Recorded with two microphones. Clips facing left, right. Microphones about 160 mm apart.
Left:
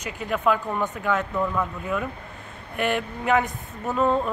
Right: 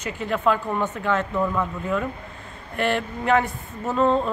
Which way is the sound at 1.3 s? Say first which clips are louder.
Right 2 dB; 5° right (ahead or behind).